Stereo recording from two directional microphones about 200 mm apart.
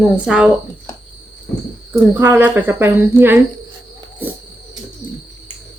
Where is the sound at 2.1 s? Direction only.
10° right (ahead or behind).